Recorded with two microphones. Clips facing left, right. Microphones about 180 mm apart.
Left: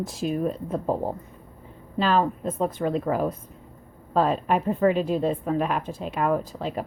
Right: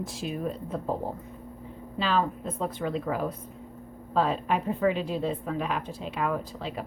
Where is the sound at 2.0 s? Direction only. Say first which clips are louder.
Left 4 dB; 45° left (ahead or behind).